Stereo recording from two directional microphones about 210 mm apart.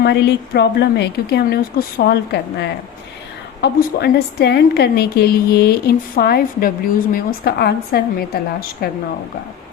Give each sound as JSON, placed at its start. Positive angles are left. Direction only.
{"t": 0.0, "sound": "a woman's voice", "side_deg": 55}